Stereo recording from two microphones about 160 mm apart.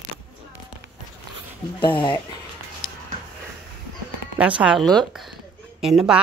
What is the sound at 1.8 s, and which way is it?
Speech, 30° left (ahead or behind).